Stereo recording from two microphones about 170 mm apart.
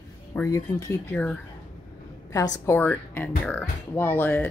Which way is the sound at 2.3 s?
20° left (ahead or behind).